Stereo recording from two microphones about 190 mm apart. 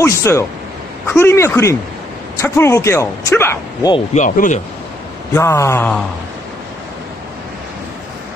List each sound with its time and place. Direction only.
0.0 s speech: 15° left (ahead or behind)
3.9 s speech: 40° left (ahead or behind)
5.3 s speech: 15° left (ahead or behind)